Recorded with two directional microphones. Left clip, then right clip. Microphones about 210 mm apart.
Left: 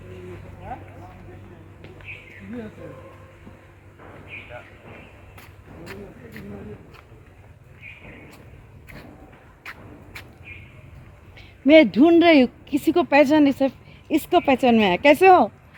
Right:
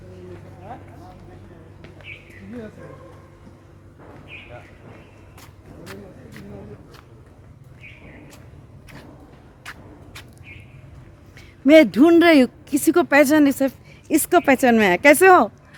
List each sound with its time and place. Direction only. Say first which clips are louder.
5.8 s vehicle: left 1 dB; 5° left (ahead or behind)
11.6 s speech: right 1 dB; 15° right (ahead or behind)